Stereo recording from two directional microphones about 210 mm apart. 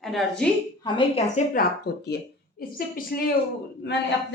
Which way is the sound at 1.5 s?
50° left (ahead or behind).